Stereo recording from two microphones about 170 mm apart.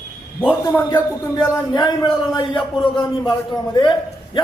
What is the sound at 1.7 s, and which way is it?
A man's voice, 25° left (ahead or behind).